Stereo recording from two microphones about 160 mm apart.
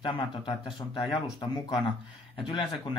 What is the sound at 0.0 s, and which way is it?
Speech, 30° left (ahead or behind).